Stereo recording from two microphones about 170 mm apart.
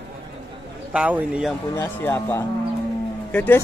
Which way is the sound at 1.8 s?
10° left (ahead or behind).